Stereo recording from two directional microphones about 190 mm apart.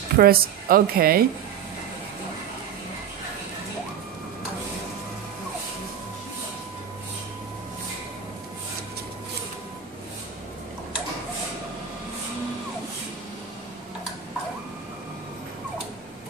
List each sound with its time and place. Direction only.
0.2 s a woman's voice: 50° right (ahead or behind)